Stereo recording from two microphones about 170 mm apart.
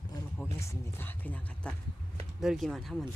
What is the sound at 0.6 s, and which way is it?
Speech, 15° left (ahead or behind).